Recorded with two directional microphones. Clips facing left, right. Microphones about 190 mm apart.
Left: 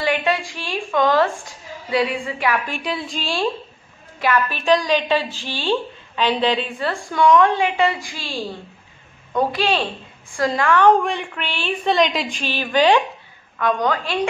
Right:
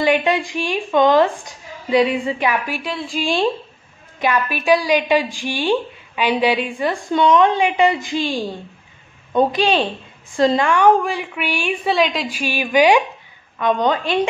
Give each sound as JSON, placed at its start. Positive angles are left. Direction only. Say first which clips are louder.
{"t": 0.0, "sound": "a woman's voice", "louder": "right 4 dB", "side_deg": -20}
{"t": 3.2, "sound": "a woman's voice", "louder": "right 7 dB", "side_deg": -20}
{"t": 11.0, "sound": "a woman's voice", "louder": "right 1 dB", "side_deg": -5}
{"t": 13.6, "sound": "a woman's voice", "louder": "right 2 dB", "side_deg": -20}